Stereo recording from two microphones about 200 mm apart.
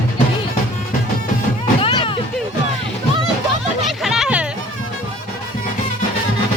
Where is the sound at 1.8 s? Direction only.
25° left (ahead or behind).